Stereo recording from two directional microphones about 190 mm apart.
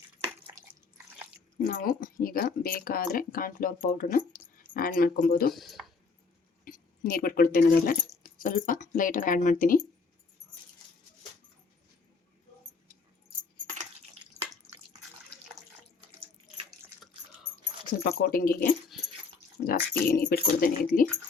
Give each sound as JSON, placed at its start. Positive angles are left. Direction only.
{"t": 1.6, "sound": "speech", "side_deg": 45}
{"t": 5.5, "sound": "speech", "side_deg": 0}
{"t": 6.7, "sound": "speech", "side_deg": 50}
{"t": 17.8, "sound": "speech", "side_deg": 50}
{"t": 18.9, "sound": "dog", "side_deg": 0}
{"t": 19.6, "sound": "speech", "side_deg": 50}